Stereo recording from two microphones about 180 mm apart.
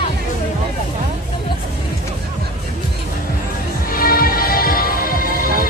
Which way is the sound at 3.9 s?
55° left (ahead or behind).